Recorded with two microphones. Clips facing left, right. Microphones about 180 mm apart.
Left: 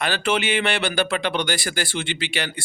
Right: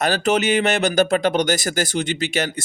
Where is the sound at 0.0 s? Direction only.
40° right (ahead or behind).